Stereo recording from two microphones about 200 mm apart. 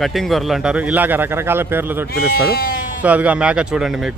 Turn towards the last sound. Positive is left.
turn(degrees=-5)  # may be behind; listen again after turning